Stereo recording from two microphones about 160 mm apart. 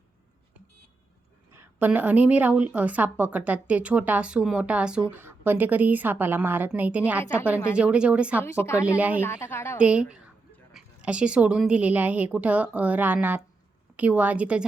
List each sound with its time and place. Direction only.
1.5 s a woman's voice: 10° right (ahead or behind)
8.4 s a woman's voice: 15° left (ahead or behind)
9.0 s a woman's voice: 10° right (ahead or behind)
9.2 s a woman's voice: 15° left (ahead or behind)
9.7 s a woman's voice: 10° right (ahead or behind)